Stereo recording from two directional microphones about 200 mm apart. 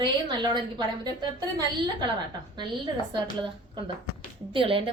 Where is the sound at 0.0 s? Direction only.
20° right (ahead or behind).